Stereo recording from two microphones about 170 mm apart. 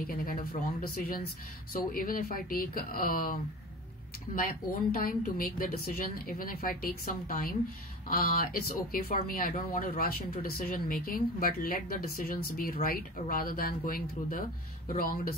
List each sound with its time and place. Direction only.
0.0 s a woman's voice: 60° left (ahead or behind)
4.4 s a woman's voice: 55° left (ahead or behind)